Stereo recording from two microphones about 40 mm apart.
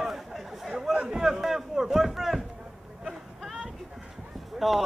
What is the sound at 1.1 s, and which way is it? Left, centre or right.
Speech, centre.